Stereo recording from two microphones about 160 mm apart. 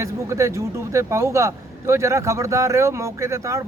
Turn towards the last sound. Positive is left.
turn(degrees=-20)  # may be behind; listen again after turning